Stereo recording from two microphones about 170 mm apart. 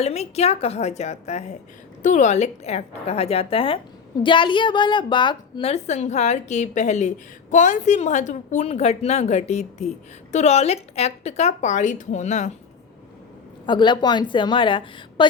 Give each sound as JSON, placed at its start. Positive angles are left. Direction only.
{"t": 0.0, "sound": "a woman's voice", "side_deg": 40}
{"t": 13.7, "sound": "a woman's voice", "side_deg": 25}